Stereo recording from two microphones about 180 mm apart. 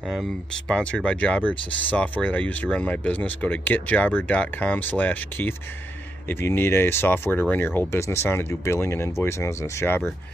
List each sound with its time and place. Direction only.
0.1 s speech: centre (ahead or behind)